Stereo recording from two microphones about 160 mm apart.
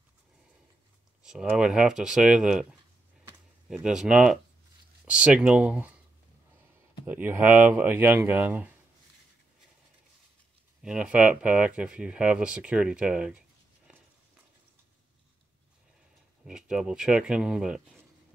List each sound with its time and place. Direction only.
1.2 s speech: 5° right (ahead or behind)
3.6 s speech: 5° right (ahead or behind)
7.1 s speech: 10° right (ahead or behind)
10.8 s speech: 5° right (ahead or behind)
16.4 s speech: 5° right (ahead or behind)